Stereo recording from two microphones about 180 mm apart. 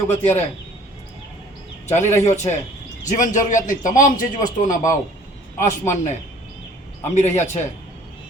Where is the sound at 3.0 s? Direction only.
45° left (ahead or behind).